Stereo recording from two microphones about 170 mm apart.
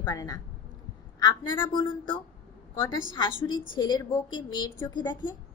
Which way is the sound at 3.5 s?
25° left (ahead or behind).